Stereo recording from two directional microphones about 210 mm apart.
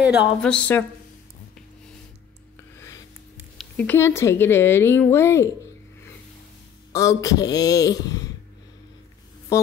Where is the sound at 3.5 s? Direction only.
5° left (ahead or behind).